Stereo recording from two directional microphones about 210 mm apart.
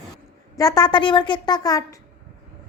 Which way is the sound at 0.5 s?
15° left (ahead or behind).